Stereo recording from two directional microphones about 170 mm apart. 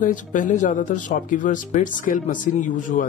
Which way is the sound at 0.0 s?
50° left (ahead or behind).